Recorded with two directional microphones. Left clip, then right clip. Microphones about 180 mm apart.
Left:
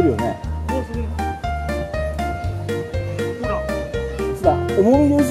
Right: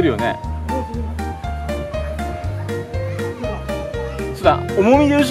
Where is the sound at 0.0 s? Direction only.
Centre (ahead or behind).